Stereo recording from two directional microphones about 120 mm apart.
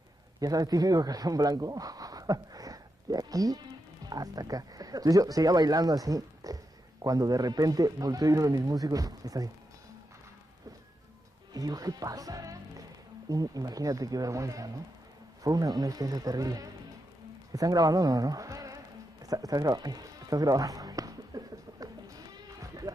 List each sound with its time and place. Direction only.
0.4 s speech: 30° right (ahead or behind)
11.5 s a man's voice: 30° right (ahead or behind)
19.2 s music: 30° right (ahead or behind)